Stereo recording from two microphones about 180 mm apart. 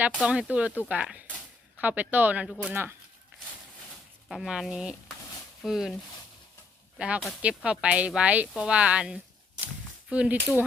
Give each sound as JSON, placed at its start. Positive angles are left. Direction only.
{"t": 0.1, "sound": "speech", "side_deg": -5}
{"t": 4.3, "sound": "speech", "side_deg": 0}
{"t": 7.0, "sound": "speech", "side_deg": 0}